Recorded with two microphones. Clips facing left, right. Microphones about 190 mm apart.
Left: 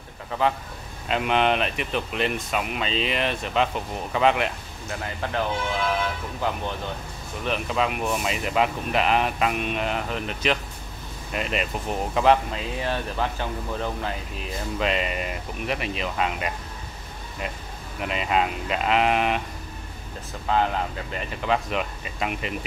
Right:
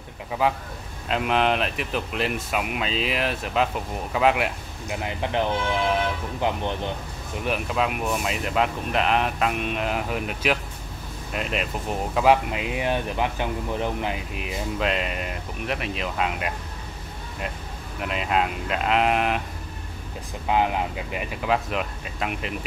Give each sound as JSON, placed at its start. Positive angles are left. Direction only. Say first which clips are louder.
{"t": 0.3, "sound": "speech", "louder": "even", "side_deg": -5}
{"t": 7.4, "sound": "speech", "louder": "even", "side_deg": -5}
{"t": 12.4, "sound": "speech", "louder": "right 2 dB", "side_deg": -15}
{"t": 14.8, "sound": "speech", "louder": "left 2 dB", "side_deg": 0}
{"t": 18.0, "sound": "speech", "louder": "even", "side_deg": 0}
{"t": 20.4, "sound": "speech", "louder": "right 1 dB", "side_deg": -15}